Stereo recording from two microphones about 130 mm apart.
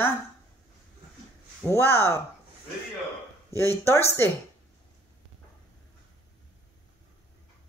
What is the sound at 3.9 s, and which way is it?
Speech, 20° left (ahead or behind).